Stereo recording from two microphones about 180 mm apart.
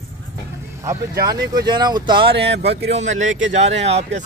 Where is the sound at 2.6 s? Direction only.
35° right (ahead or behind).